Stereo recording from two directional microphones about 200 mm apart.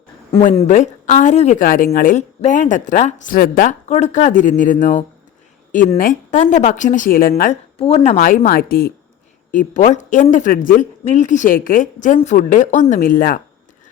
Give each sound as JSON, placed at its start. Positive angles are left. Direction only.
{"t": 0.3, "sound": "speech", "side_deg": 30}
{"t": 7.5, "sound": "speech", "side_deg": 30}